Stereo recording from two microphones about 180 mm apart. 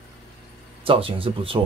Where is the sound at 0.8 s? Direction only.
30° right (ahead or behind).